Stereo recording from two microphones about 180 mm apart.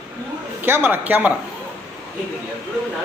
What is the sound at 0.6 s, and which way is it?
Speech, 10° right (ahead or behind).